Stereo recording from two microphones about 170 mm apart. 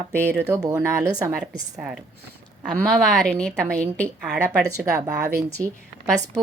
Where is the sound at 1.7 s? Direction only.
5° right (ahead or behind).